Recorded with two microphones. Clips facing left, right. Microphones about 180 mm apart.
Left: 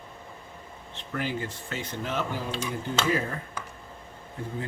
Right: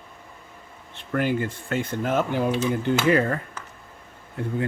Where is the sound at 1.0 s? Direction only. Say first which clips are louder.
Right 7 dB; 55° right (ahead or behind).